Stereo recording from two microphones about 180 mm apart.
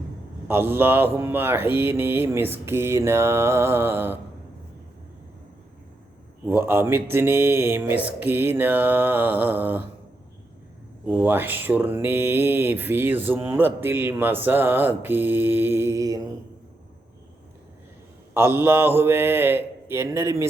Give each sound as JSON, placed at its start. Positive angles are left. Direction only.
{"t": 0.4, "sound": "speech", "side_deg": -10}
{"t": 6.7, "sound": "speech", "side_deg": -10}
{"t": 11.0, "sound": "speech", "side_deg": -10}
{"t": 18.3, "sound": "speech", "side_deg": -15}